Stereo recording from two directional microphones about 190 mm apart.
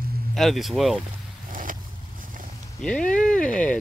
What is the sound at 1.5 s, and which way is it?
Boat, 45° right (ahead or behind).